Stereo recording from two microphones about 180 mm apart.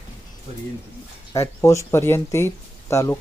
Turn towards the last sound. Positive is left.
turn(degrees=15)  # may be behind; listen again after turning